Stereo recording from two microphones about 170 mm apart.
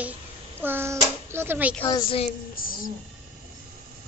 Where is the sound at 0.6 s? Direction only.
15° right (ahead or behind).